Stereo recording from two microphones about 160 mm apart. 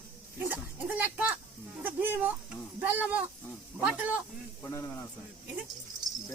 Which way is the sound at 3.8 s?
10° right (ahead or behind).